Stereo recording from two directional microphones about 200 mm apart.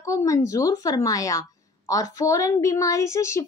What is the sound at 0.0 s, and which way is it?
A woman's voice, 15° left (ahead or behind).